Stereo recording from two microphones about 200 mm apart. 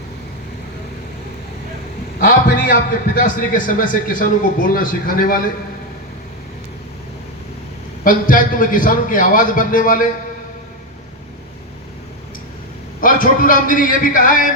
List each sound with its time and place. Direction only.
2.1 s a sound: 45° left (ahead or behind)
3.2 s speech: 45° left (ahead or behind)
8.0 s speech: 45° left (ahead or behind)
13.0 s speech: 45° left (ahead or behind)